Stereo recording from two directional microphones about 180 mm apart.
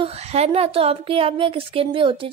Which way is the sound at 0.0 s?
35° right (ahead or behind).